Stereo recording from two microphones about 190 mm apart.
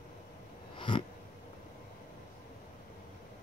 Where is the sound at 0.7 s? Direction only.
25° left (ahead or behind).